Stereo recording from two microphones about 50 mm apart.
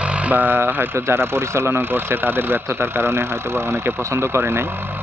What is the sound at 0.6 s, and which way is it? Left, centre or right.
Speech, right.